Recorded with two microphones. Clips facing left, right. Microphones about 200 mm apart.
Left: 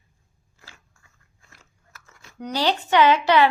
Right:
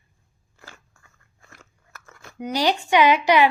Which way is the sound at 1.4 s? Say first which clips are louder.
Right 6 dB; 55° right (ahead or behind).